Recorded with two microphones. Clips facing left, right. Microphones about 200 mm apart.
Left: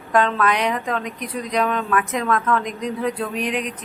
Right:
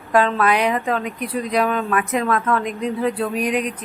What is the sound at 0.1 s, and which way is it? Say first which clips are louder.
A woman's voice: right 2 dB; 10° right (ahead or behind).